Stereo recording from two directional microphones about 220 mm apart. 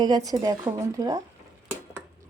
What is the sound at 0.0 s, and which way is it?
A woman's voice, 15° right (ahead or behind).